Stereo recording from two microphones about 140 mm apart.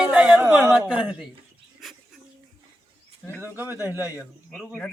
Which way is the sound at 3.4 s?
15° right (ahead or behind).